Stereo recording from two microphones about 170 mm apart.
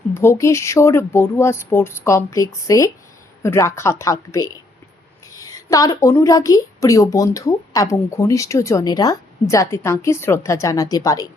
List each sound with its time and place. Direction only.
0.1 s a woman's voice: 15° left (ahead or behind)